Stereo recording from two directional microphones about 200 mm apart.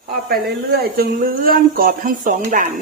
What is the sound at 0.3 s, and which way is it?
Speech, 50° right (ahead or behind).